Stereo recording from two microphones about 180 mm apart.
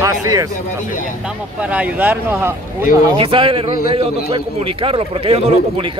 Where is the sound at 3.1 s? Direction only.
30° right (ahead or behind).